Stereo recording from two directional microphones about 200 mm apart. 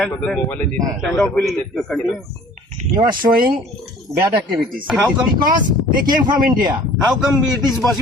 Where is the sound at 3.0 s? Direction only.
20° right (ahead or behind).